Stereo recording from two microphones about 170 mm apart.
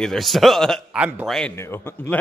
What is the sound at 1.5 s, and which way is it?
Speech, 15° left (ahead or behind).